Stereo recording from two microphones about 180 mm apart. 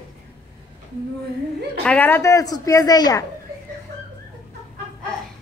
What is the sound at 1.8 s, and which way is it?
Speech, 10° left (ahead or behind).